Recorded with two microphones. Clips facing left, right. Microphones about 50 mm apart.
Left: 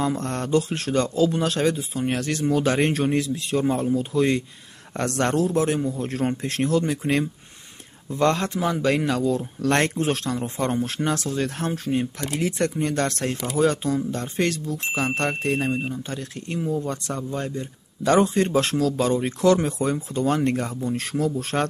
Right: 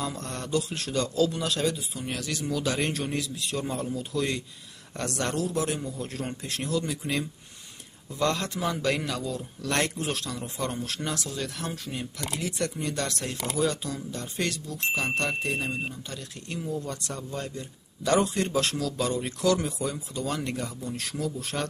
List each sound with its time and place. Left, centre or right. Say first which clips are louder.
0.0 s a man's voice: left 8 dB; left
8.5 s a man's voice: left 5 dB; left